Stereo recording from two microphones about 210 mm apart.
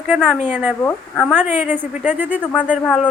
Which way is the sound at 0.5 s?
5° right (ahead or behind).